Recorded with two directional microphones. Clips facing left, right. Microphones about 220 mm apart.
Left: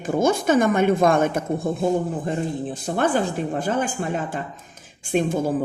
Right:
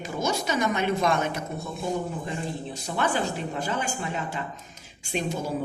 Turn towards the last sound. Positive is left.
turn(degrees=50)  # may be behind; listen again after turning